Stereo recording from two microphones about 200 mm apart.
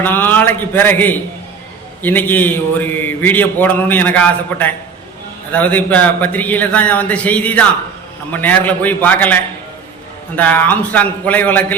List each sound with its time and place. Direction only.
0.0 s a man's voice: 10° left (ahead or behind)